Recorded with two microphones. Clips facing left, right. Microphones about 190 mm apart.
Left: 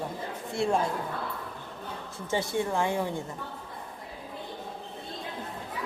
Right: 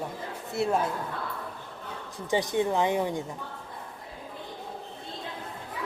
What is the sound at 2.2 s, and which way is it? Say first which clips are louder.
Speech: right 3 dB; 15° right (ahead or behind).